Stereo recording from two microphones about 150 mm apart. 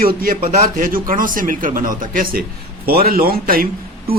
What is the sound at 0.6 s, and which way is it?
Speech, 70° right (ahead or behind).